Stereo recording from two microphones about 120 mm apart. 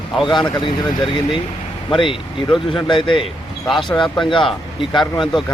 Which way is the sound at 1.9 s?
45° left (ahead or behind).